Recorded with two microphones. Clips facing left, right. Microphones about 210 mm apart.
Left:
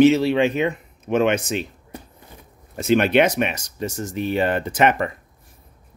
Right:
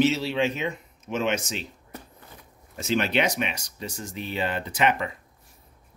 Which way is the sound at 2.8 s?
55° left (ahead or behind).